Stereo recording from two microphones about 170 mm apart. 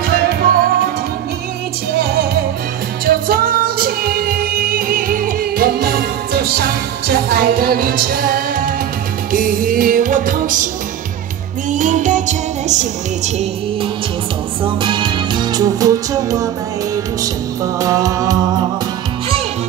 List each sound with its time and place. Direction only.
0.2 s music: 60° right (ahead or behind)
2.0 s music: 65° right (ahead or behind)
11.7 s music: 45° right (ahead or behind)
14.6 s music: 30° right (ahead or behind)
17.7 s music: 20° right (ahead or behind)